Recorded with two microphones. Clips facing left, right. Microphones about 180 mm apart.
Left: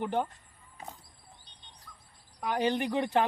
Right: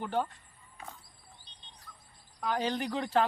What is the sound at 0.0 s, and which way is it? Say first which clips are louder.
Speech: left 2 dB; 20° left (ahead or behind).